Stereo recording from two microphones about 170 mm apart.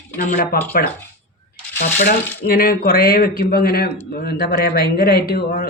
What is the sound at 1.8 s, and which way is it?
Speech, 55° left (ahead or behind).